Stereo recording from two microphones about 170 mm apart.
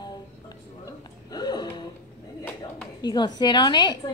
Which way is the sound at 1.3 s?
25° left (ahead or behind).